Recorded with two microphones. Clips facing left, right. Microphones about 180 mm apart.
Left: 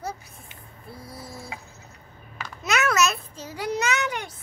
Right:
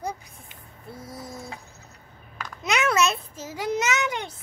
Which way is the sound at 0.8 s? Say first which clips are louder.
Right 2 dB; 20° right (ahead or behind).